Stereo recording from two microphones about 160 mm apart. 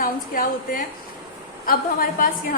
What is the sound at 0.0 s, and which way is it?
A woman's voice, 60° left (ahead or behind).